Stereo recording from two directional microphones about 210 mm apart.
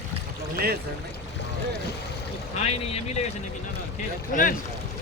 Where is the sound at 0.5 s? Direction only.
45° right (ahead or behind).